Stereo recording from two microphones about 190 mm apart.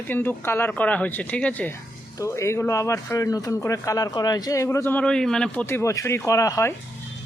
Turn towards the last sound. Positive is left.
turn(degrees=15)  # may be behind; listen again after turning